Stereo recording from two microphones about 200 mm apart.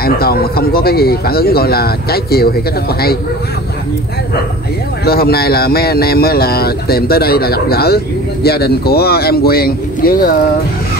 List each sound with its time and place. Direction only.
0.0 s speech: 50° left (ahead or behind)
5.0 s speech: 50° left (ahead or behind)